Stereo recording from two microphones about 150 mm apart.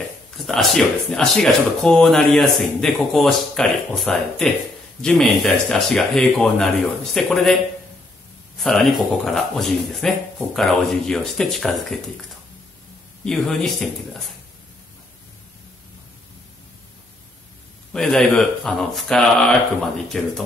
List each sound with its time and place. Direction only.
0.4 s speech: centre (ahead or behind)
8.5 s speech: centre (ahead or behind)
13.2 s speech: 5° left (ahead or behind)
17.9 s speech: 5° left (ahead or behind)